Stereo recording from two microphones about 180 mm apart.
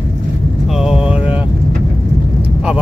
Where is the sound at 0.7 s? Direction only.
Centre (ahead or behind).